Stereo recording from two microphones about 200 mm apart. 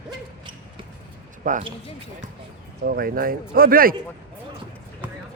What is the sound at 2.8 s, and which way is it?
Speech, 45° right (ahead or behind).